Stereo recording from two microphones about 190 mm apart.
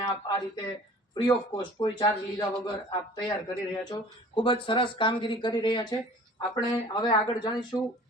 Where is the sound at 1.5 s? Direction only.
25° left (ahead or behind).